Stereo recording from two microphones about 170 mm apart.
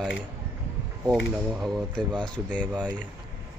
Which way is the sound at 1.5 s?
Centre (ahead or behind).